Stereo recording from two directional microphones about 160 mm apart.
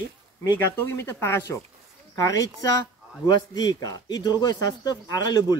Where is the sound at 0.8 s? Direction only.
15° left (ahead or behind).